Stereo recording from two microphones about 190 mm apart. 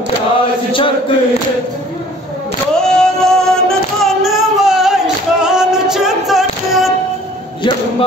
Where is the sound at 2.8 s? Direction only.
5° left (ahead or behind).